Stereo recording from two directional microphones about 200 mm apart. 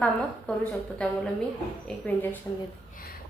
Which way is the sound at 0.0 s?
5° left (ahead or behind).